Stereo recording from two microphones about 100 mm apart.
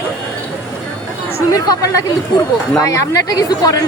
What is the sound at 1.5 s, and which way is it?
Speech, 35° left (ahead or behind).